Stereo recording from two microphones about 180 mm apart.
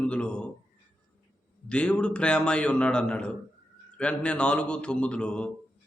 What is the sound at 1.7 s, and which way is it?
A man's voice, 5° left (ahead or behind).